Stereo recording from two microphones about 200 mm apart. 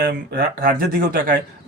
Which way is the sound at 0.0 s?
50° right (ahead or behind).